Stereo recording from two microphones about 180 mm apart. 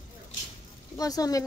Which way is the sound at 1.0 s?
20° left (ahead or behind).